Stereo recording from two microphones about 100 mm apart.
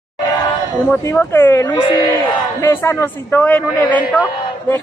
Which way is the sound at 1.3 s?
25° left (ahead or behind).